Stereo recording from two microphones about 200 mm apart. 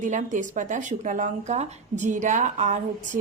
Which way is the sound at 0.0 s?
40° right (ahead or behind).